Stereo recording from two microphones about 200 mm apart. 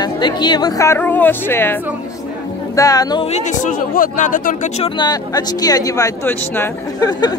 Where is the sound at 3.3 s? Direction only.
40° left (ahead or behind).